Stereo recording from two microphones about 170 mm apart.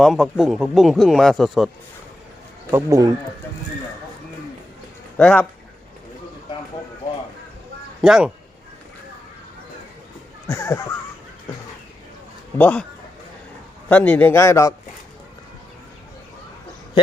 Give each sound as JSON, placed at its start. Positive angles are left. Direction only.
{"t": 0.0, "sound": "speech", "side_deg": 0}
{"t": 2.6, "sound": "speech", "side_deg": -15}
{"t": 5.1, "sound": "a man's voice", "side_deg": 10}
{"t": 8.0, "sound": "speech", "side_deg": -5}
{"t": 10.4, "sound": "a man's voice", "side_deg": 15}
{"t": 12.5, "sound": "a man's voice", "side_deg": 10}
{"t": 13.8, "sound": "a man's voice", "side_deg": 10}